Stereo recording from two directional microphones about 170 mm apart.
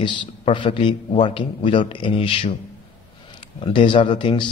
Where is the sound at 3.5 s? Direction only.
30° left (ahead or behind).